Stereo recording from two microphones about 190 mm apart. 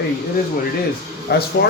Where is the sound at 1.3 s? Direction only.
65° left (ahead or behind).